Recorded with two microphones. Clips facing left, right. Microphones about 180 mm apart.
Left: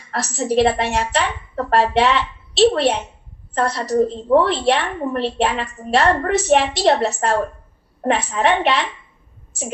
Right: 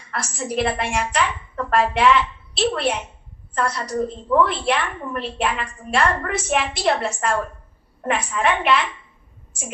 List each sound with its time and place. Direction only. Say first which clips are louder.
0.1 s a woman's voice: left 6 dB; 35° left (ahead or behind)